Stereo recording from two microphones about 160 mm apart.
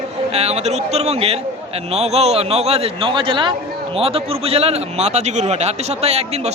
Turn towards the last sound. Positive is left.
turn(degrees=-40)  # may be behind; listen again after turning